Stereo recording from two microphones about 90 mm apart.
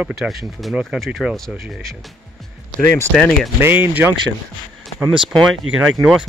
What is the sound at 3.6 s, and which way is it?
Speech, 20° right (ahead or behind).